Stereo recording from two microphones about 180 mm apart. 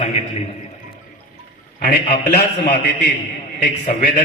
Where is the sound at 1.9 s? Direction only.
55° left (ahead or behind).